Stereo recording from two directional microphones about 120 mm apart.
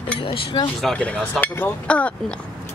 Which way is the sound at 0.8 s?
10° left (ahead or behind).